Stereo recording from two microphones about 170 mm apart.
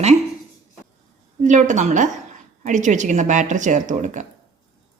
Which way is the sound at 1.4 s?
45° right (ahead or behind).